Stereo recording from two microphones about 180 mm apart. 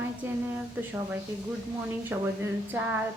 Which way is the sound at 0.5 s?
10° right (ahead or behind).